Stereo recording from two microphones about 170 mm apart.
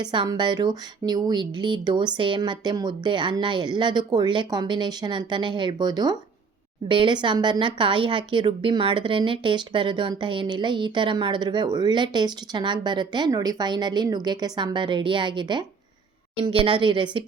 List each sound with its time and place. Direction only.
0.0 s speech: 25° right (ahead or behind)